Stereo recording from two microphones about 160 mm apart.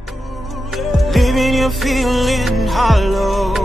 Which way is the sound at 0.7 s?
Centre (ahead or behind).